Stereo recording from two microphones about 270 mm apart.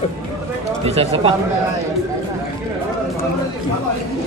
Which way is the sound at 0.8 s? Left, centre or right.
Right.